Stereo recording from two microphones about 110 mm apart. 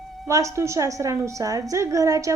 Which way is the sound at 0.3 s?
30° right (ahead or behind).